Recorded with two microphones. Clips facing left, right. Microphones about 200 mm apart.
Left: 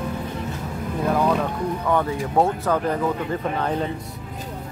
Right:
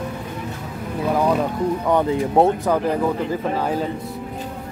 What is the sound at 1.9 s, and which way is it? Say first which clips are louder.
Speech: right 4 dB; 20° right (ahead or behind).